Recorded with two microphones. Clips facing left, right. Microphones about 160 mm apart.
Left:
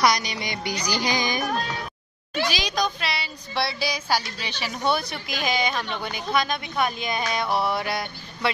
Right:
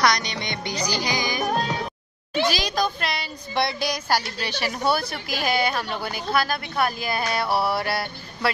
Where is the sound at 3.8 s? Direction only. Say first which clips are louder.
Right 1 dB; 10° right (ahead or behind).